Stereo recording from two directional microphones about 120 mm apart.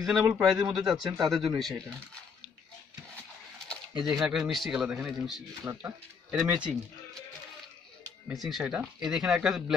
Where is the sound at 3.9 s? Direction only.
35° right (ahead or behind).